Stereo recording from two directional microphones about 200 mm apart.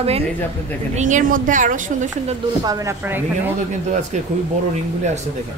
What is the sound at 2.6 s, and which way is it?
Speech, 20° right (ahead or behind).